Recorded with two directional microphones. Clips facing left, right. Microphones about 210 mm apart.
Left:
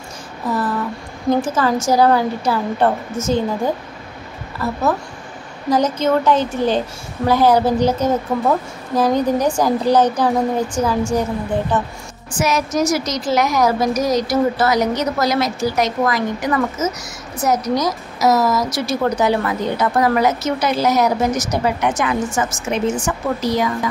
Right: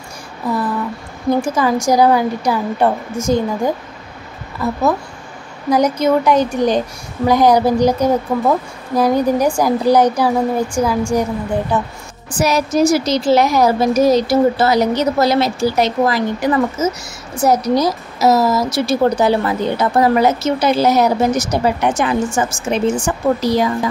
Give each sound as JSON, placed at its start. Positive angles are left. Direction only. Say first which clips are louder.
{"t": 0.5, "sound": "a sound", "louder": "right 1 dB", "side_deg": -10}
{"t": 1.4, "sound": "a woman's voice", "louder": "right 2 dB", "side_deg": -10}
{"t": 12.4, "sound": "a woman's voice", "louder": "right 4 dB", "side_deg": -35}